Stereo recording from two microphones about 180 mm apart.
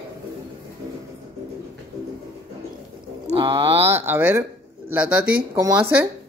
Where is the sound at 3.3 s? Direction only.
30° right (ahead or behind).